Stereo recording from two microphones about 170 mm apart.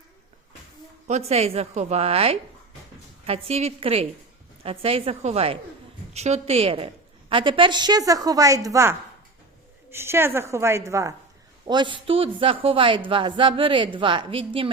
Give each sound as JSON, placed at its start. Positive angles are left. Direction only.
{"t": 1.0, "sound": "a man's voice", "side_deg": -40}